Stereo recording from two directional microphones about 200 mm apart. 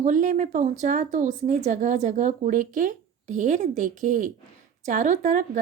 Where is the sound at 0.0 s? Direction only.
40° right (ahead or behind).